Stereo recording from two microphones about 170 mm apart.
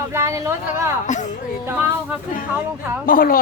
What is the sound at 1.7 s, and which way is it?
Speech, 10° right (ahead or behind).